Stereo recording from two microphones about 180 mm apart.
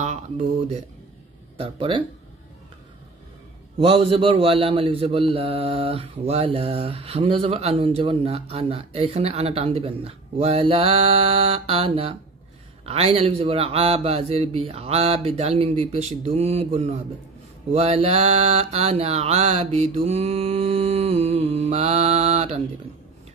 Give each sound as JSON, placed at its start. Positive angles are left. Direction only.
{"t": 0.0, "sound": "speech", "side_deg": -40}
{"t": 1.6, "sound": "speech", "side_deg": -30}
{"t": 3.7, "sound": "a man's voice", "side_deg": -30}